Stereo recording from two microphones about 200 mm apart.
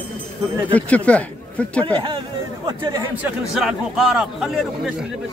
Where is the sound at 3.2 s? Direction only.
Centre (ahead or behind).